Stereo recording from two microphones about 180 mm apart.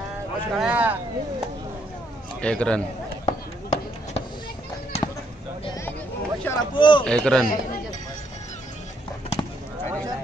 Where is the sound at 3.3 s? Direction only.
40° left (ahead or behind).